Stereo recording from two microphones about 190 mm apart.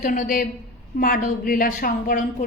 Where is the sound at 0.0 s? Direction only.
45° left (ahead or behind).